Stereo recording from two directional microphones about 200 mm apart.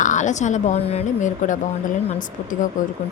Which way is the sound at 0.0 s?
40° left (ahead or behind).